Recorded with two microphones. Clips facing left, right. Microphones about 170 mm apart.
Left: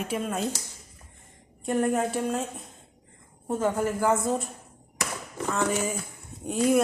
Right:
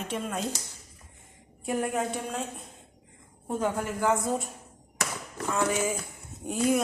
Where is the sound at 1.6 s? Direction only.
Centre (ahead or behind).